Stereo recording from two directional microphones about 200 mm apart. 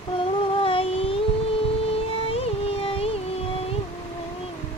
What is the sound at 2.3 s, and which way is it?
Music, 30° left (ahead or behind).